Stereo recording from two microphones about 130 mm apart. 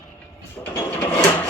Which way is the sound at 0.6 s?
15° left (ahead or behind).